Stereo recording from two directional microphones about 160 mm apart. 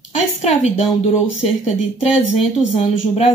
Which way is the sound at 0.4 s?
40° left (ahead or behind).